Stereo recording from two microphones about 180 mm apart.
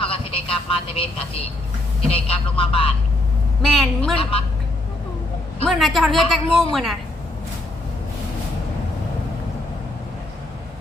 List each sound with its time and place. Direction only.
0.0 s speech: 30° left (ahead or behind)
3.6 s a woman's voice: centre (ahead or behind)
4.2 s speech: 30° left (ahead or behind)
5.6 s a woman's voice: centre (ahead or behind)